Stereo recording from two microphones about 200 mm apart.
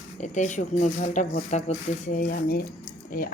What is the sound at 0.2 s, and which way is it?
Speech, 35° left (ahead or behind).